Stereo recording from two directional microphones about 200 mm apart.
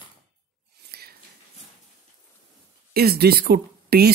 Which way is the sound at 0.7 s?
55° right (ahead or behind).